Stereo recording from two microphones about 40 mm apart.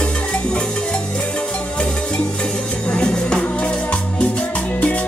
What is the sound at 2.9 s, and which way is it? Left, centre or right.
Music, left.